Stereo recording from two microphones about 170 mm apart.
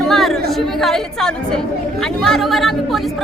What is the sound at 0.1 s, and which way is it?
A woman's voice, centre (ahead or behind).